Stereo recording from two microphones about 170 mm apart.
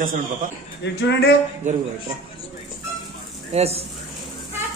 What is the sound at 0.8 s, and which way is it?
Speech, 80° left.